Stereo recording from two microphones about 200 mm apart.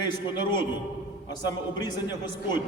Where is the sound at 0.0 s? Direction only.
20° left (ahead or behind).